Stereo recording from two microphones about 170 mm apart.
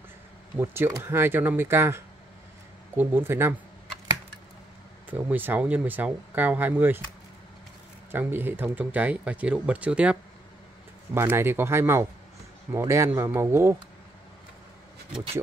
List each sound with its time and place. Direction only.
0.6 s speech: 15° right (ahead or behind)
5.1 s speech: 10° right (ahead or behind)
8.1 s speech: 10° right (ahead or behind)
11.1 s speech: 15° right (ahead or behind)